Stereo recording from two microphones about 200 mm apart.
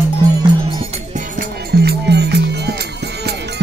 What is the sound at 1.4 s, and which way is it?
Music, 55° right (ahead or behind).